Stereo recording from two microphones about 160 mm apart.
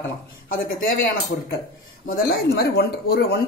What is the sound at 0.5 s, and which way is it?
Speech, 65° left (ahead or behind).